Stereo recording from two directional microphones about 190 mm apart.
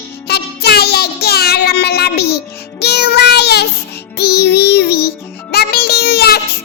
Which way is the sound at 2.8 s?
60° left (ahead or behind).